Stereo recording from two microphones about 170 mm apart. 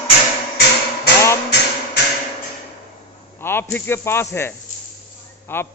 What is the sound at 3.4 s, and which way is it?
Speech, 10° left (ahead or behind).